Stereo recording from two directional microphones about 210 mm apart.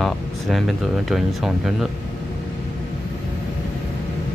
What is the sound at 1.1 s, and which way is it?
Speech, centre (ahead or behind).